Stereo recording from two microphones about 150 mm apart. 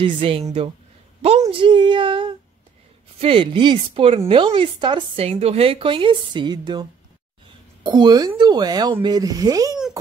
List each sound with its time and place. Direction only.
0.0 s speech: 40° right (ahead or behind)